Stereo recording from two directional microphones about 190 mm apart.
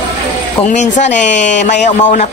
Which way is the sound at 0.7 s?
40° left (ahead or behind).